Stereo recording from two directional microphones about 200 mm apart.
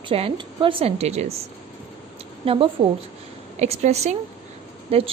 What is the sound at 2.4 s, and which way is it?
A woman's voice, 25° right (ahead or behind).